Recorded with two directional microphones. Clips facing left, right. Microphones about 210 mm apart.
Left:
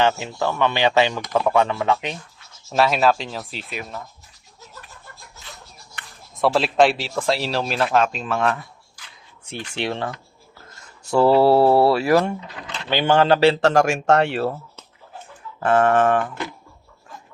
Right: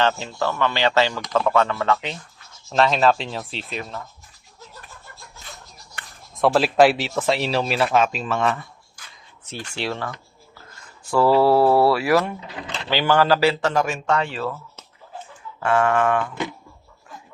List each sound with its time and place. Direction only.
0.0 s speech: 15° left (ahead or behind)
2.6 s speech: 5° left (ahead or behind)
6.3 s speech: centre (ahead or behind)
9.6 s speech: 20° left (ahead or behind)
13.7 s speech: 80° left
14.2 s speech: 65° left (ahead or behind)
15.6 s speech: 35° left (ahead or behind)